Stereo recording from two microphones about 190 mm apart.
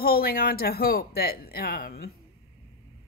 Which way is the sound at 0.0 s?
55° left (ahead or behind).